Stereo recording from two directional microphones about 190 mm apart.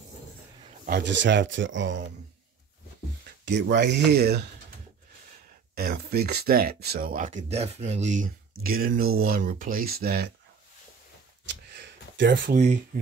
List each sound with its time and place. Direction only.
0.8 s speech: 60° right (ahead or behind)
3.4 s speech: 70° right (ahead or behind)
5.8 s speech: 55° right (ahead or behind); by 8.3 s 40° right (ahead or behind)
8.6 s speech: 50° right (ahead or behind)
11.4 s a sound: 65° right (ahead or behind)
12.4 s speech: 40° right (ahead or behind)
12.9 s speech: 50° right (ahead or behind)